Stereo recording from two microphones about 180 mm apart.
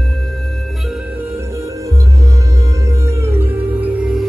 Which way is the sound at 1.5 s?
15° right (ahead or behind).